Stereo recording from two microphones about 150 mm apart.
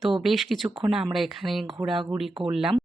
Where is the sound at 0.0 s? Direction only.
Centre (ahead or behind).